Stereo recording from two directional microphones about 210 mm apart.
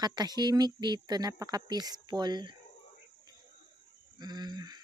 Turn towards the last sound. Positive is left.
turn(degrees=-20)  # may be behind; listen again after turning